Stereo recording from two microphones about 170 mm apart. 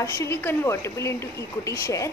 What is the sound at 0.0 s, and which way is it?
A woman's voice, 15° left (ahead or behind).